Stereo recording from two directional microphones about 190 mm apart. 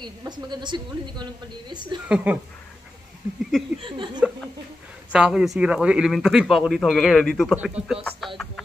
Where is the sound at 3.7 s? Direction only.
25° right (ahead or behind).